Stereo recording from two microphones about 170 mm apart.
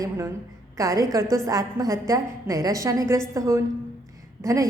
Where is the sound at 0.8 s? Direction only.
20° right (ahead or behind).